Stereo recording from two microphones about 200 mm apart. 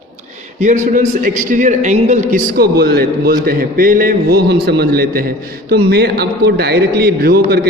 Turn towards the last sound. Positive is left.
turn(degrees=-50)  # may be behind; listen again after turning